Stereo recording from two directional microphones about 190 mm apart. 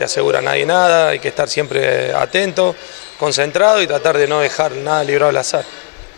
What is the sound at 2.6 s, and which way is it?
Speech, 35° left (ahead or behind).